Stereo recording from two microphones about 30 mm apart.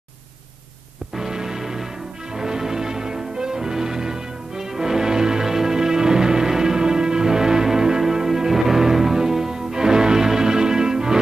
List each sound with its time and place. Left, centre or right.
1.1 s music: centre